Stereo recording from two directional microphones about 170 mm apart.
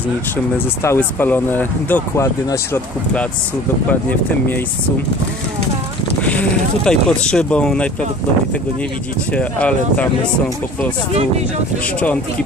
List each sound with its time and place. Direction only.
0.8 s speech: 10° left (ahead or behind)
6.2 s speech: 5° left (ahead or behind)
9.3 s speech: 5° left (ahead or behind)